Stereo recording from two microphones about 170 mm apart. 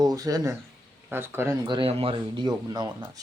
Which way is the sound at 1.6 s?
30° right (ahead or behind).